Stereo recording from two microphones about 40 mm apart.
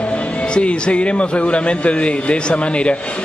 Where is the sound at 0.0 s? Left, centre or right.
Left.